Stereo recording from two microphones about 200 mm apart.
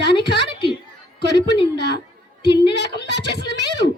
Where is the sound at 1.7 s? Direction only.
55° left (ahead or behind).